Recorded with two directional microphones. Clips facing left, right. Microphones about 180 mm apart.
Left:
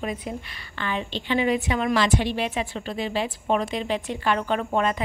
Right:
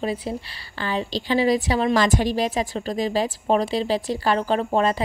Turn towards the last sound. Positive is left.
turn(degrees=-30)  # may be behind; listen again after turning